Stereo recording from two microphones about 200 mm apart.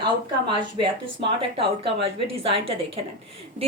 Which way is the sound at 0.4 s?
25° right (ahead or behind).